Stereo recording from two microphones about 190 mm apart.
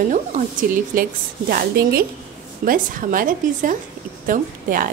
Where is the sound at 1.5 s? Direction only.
55° right (ahead or behind).